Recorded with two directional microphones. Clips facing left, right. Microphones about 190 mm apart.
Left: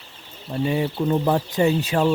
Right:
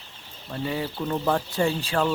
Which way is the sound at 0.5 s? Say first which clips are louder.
Left 6 dB; 25° left (ahead or behind).